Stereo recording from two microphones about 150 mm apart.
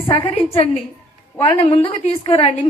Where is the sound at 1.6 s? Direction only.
35° left (ahead or behind).